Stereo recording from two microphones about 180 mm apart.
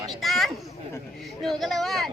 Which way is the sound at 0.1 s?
Centre (ahead or behind).